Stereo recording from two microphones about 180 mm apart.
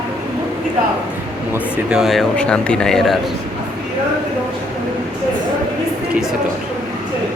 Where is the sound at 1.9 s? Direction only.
Centre (ahead or behind).